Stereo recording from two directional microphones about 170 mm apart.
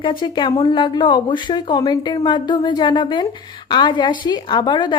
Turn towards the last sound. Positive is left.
turn(degrees=25)  # may be behind; listen again after turning